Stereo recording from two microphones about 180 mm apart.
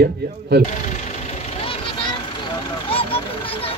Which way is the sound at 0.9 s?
40° left (ahead or behind).